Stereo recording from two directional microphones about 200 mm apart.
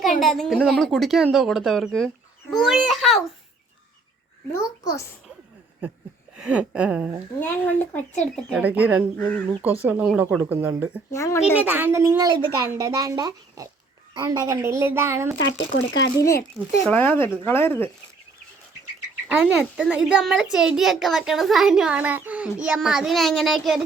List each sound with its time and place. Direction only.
0.2 s a child's voice: centre (ahead or behind)
4.5 s speech: 15° left (ahead or behind)
6.3 s a child's voice: 5° right (ahead or behind)
7.3 s a child's voice: 10° left (ahead or behind)
8.6 s a woman's voice: 10° right (ahead or behind)
9.1 s speech: 10° left (ahead or behind)
9.6 s a woman's voice: 5° right (ahead or behind)
11.1 s speech: 15° left (ahead or behind)
11.5 s a woman's voice: 10° right (ahead or behind)
15.4 s speech: 70° left (ahead or behind)
16.6 s speech: 5° left (ahead or behind)
19.3 s a child's voice: 5° right (ahead or behind)